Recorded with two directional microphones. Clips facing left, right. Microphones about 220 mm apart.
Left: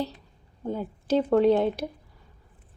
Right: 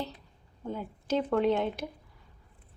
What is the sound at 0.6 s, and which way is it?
A woman's voice, 35° left (ahead or behind).